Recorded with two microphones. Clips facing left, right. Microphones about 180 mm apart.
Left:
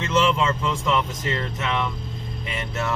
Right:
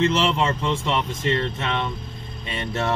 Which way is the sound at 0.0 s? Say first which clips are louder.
Right 1 dB; 30° right (ahead or behind).